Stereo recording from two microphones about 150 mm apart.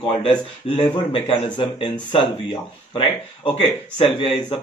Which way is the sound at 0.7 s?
40° left (ahead or behind).